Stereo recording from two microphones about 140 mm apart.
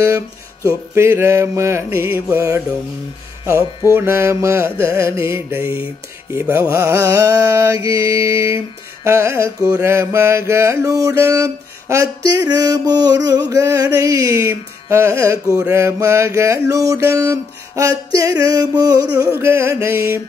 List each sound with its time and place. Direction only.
0.7 s mantra: 20° right (ahead or behind)
3.9 s mantra: 20° right (ahead or behind)